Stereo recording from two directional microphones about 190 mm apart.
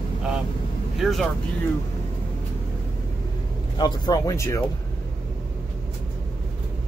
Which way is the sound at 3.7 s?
20° left (ahead or behind).